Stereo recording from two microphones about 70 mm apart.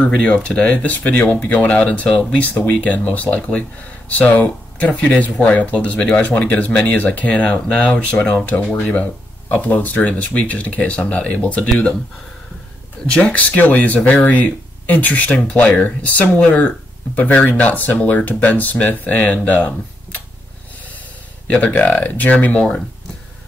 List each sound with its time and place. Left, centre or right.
0.0 s speech: centre
13.1 s speech: centre
21.5 s speech: left